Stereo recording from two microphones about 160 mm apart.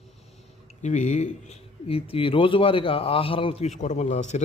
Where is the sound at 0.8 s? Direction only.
50° left (ahead or behind).